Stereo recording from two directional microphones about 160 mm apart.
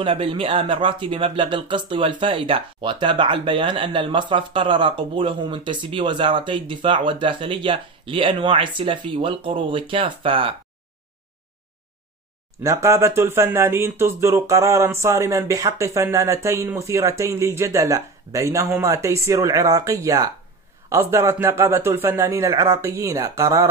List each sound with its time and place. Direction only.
0.0 s speech: 35° right (ahead or behind)
12.6 s a man's voice: 20° right (ahead or behind)